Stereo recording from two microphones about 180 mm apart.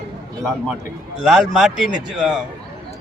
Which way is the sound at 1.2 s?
Centre (ahead or behind).